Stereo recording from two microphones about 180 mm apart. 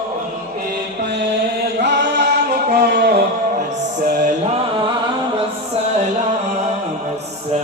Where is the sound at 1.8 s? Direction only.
75° right (ahead or behind).